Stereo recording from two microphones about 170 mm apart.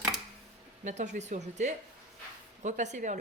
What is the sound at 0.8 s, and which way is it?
Speech, 45° right (ahead or behind).